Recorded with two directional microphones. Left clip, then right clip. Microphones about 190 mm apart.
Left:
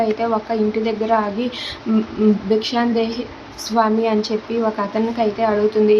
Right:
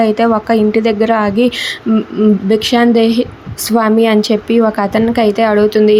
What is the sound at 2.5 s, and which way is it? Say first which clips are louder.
A woman's voice: right 7 dB; 35° right (ahead or behind).